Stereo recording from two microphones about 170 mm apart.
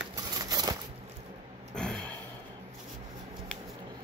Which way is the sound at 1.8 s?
5° left (ahead or behind).